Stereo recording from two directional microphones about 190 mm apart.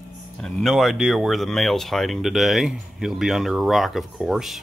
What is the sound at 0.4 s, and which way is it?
Speech, centre (ahead or behind).